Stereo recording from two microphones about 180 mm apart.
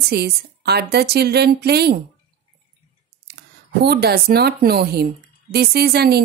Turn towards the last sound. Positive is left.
turn(degrees=-60)  # may be behind; listen again after turning